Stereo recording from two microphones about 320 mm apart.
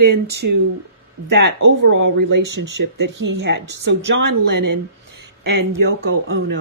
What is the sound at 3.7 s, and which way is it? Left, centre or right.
Speech, right.